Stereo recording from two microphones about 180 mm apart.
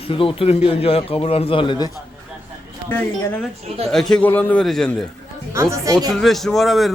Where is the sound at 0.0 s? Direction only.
30° left (ahead or behind).